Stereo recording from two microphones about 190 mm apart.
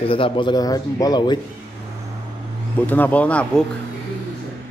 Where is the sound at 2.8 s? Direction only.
10° left (ahead or behind).